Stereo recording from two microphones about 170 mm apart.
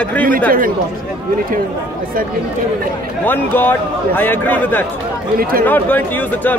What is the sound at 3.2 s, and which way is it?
Speech, 10° left (ahead or behind).